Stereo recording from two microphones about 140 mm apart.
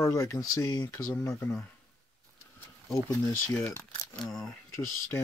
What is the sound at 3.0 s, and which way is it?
Speech, 15° left (ahead or behind).